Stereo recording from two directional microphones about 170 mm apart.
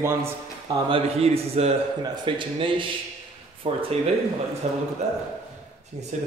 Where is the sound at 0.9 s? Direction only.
35° right (ahead or behind).